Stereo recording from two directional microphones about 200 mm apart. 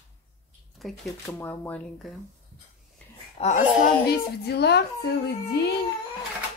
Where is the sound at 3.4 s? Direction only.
30° left (ahead or behind).